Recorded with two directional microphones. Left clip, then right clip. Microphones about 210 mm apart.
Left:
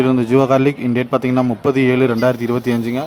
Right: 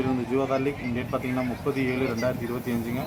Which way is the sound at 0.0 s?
50° left (ahead or behind).